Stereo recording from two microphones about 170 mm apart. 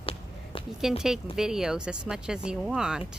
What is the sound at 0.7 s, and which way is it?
Speech, centre (ahead or behind).